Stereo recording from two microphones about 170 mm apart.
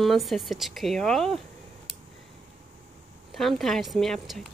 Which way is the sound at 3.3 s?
Centre (ahead or behind).